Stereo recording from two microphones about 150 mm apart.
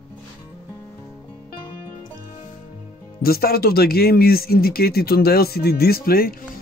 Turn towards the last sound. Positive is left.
turn(degrees=80)